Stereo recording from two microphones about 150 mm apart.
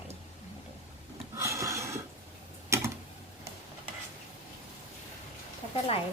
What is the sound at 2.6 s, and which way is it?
Tick-tock, 20° right (ahead or behind).